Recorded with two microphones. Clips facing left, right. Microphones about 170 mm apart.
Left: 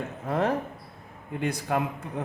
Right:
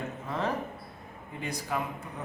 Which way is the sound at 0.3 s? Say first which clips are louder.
Left 6 dB; 55° left (ahead or behind).